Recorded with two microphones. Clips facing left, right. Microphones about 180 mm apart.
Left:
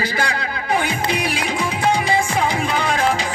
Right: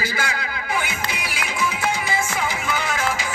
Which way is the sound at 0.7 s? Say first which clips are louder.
Left 7 dB; 35° left (ahead or behind).